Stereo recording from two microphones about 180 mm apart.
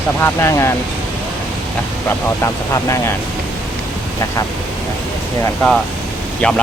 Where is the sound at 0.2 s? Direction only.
15° left (ahead or behind).